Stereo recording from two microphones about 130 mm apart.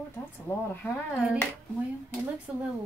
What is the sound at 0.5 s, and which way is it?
Speech, 20° left (ahead or behind).